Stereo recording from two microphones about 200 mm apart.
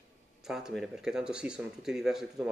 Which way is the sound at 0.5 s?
Centre (ahead or behind).